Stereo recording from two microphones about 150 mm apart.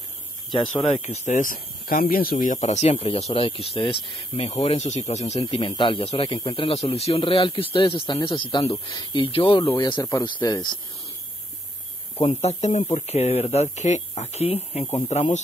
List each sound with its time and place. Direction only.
0.8 s speech: 45° left (ahead or behind)
12.2 s speech: 45° left (ahead or behind)